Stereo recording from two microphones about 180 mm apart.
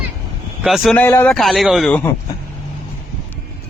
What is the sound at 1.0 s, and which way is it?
A man's voice, 10° left (ahead or behind).